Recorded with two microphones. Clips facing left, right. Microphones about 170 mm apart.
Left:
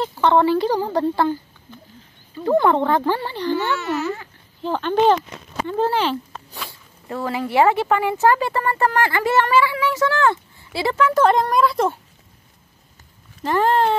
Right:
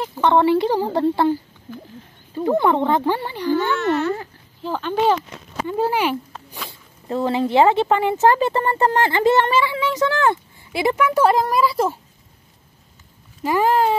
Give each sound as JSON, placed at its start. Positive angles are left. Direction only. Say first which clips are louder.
{"t": 0.2, "sound": "speech", "louder": "right 1 dB", "side_deg": -20}
{"t": 2.4, "sound": "speech", "louder": "left 1 dB", "side_deg": -20}
{"t": 3.7, "sound": "speech", "louder": "right 4 dB", "side_deg": 5}
{"t": 5.7, "sound": "a sound", "louder": "even", "side_deg": -10}
{"t": 7.1, "sound": "speech", "louder": "right 5 dB", "side_deg": -25}
{"t": 13.4, "sound": "speech", "louder": "even", "side_deg": -10}